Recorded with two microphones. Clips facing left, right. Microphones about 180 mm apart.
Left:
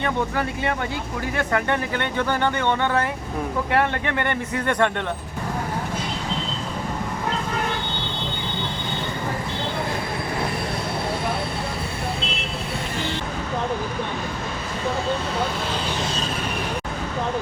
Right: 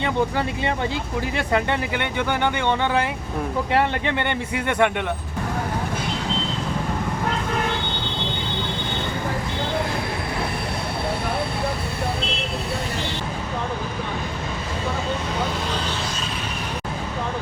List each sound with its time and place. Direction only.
0.0 s speech: 20° right (ahead or behind)